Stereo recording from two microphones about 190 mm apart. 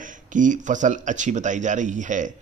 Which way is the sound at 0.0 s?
45° right (ahead or behind).